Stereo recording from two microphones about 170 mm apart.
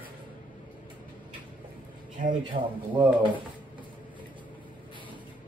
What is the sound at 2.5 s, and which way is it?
Speech, 55° right (ahead or behind).